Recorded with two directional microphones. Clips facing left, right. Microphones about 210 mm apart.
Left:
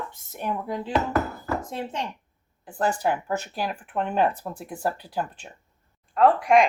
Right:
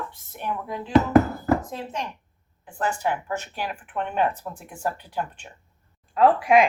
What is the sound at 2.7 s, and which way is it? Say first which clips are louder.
Speech: left 2 dB; 40° left (ahead or behind).